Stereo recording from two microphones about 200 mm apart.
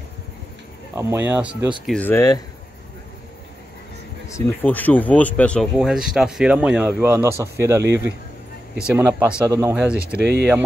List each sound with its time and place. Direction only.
0.9 s speech: 10° right (ahead or behind)
1.9 s speech: 10° left (ahead or behind)
4.3 s speech: 10° left (ahead or behind); by 9.9 s 10° right (ahead or behind)
10.2 s speech: 55° right (ahead or behind)